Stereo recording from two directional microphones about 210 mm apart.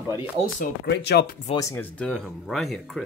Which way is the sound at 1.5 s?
10° left (ahead or behind).